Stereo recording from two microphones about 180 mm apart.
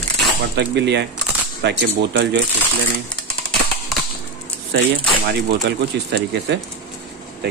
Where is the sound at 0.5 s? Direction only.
70° right (ahead or behind).